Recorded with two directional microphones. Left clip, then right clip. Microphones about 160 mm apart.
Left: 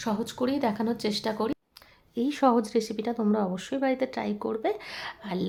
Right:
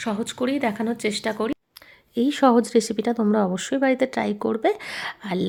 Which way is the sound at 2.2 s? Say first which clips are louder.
Right 6 dB; 25° right (ahead or behind).